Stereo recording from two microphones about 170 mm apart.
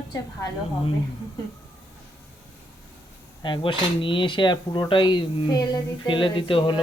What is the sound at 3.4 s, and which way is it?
Speech, 30° left (ahead or behind).